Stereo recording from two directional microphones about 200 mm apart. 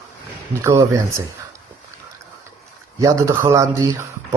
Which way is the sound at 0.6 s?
15° right (ahead or behind).